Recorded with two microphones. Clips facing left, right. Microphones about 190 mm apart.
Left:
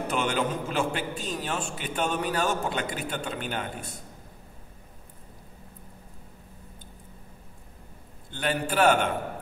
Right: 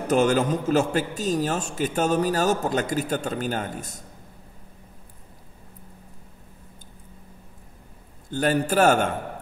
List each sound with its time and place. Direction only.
0.1 s a man's voice: 45° right (ahead or behind)
8.3 s a man's voice: 45° right (ahead or behind)